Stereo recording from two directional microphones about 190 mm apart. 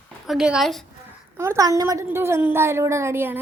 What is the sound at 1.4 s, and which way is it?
A woman's voice, 15° right (ahead or behind).